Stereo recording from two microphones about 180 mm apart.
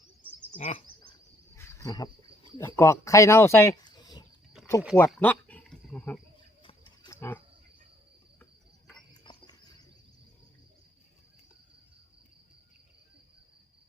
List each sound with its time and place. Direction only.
0.2 s bird: 10° right (ahead or behind)
0.5 s bird: 35° left (ahead or behind)
1.5 s cricket: 15° left (ahead or behind)
2.6 s speech: 10° left (ahead or behind)
4.6 s a sound: centre (ahead or behind)
4.9 s speech: 10° left (ahead or behind)
6.6 s wild animals: 30° left (ahead or behind)
7.1 s wild animals: 10° left (ahead or behind)
9.3 s insect: 25° left (ahead or behind)